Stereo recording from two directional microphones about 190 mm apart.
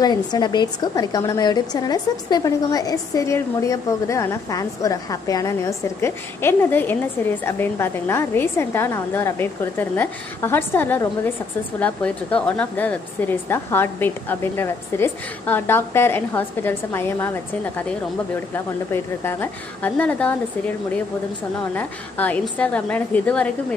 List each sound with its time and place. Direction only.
0.0 s speech: 20° left (ahead or behind)